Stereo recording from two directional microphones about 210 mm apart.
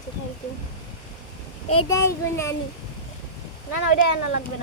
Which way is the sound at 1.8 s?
15° left (ahead or behind).